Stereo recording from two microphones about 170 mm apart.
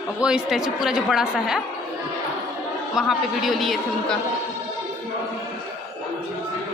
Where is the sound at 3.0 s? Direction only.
Centre (ahead or behind).